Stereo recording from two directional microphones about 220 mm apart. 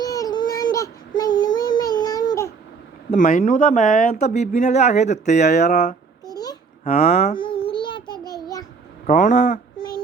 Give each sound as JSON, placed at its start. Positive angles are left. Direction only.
{"t": 0.0, "sound": "a sound", "side_deg": 15}
{"t": 0.6, "sound": "child singing", "side_deg": 15}
{"t": 3.1, "sound": "speech", "side_deg": 35}
{"t": 5.5, "sound": "speech", "side_deg": 50}
{"t": 6.2, "sound": "babbling", "side_deg": 15}
{"t": 7.3, "sound": "child singing", "side_deg": 25}
{"t": 9.0, "sound": "a sound", "side_deg": 35}